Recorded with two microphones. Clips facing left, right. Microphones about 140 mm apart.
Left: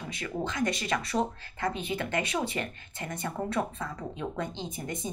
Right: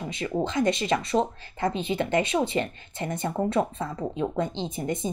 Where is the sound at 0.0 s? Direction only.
25° right (ahead or behind).